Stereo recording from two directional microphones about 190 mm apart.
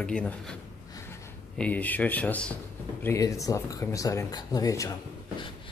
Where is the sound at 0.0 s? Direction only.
5° left (ahead or behind).